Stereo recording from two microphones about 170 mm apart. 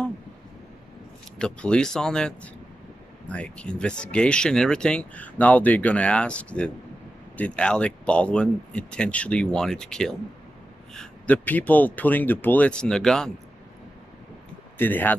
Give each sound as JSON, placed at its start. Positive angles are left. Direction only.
{"t": 1.4, "sound": "speech", "side_deg": 5}
{"t": 14.8, "sound": "speech", "side_deg": 10}